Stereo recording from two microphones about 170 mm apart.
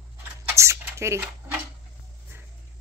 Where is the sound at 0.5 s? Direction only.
15° right (ahead or behind).